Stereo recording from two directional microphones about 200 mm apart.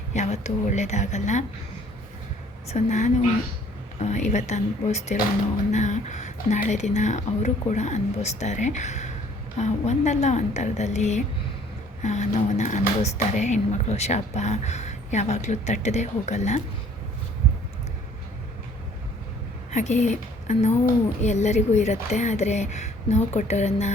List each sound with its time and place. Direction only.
0.1 s speech: 35° left (ahead or behind)
2.6 s speech: 35° left (ahead or behind)
19.7 s speech: 35° left (ahead or behind)